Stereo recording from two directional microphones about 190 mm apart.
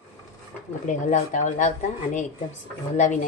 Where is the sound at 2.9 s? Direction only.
40° left (ahead or behind).